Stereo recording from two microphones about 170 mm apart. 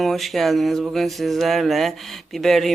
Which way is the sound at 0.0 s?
Centre (ahead or behind).